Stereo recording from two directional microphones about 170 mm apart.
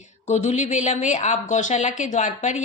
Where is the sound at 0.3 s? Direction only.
45° left (ahead or behind).